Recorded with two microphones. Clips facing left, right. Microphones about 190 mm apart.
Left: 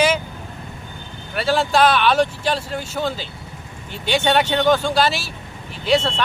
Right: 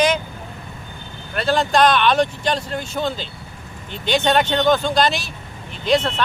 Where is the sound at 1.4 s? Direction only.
10° left (ahead or behind).